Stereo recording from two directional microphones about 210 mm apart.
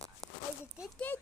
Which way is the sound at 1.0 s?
10° left (ahead or behind).